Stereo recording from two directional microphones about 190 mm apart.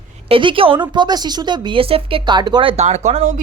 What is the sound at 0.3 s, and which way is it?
A woman's voice, 25° right (ahead or behind).